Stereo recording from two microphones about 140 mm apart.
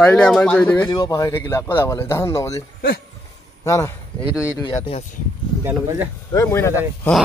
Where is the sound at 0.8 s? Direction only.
30° left (ahead or behind).